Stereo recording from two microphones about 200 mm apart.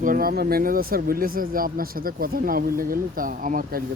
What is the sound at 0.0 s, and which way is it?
Speech, 45° right (ahead or behind).